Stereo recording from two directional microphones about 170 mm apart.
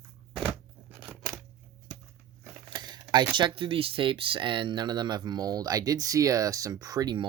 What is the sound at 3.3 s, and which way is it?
Speech, 30° right (ahead or behind).